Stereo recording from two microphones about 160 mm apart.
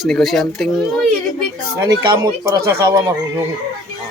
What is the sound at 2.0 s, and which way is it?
Speech, 20° right (ahead or behind).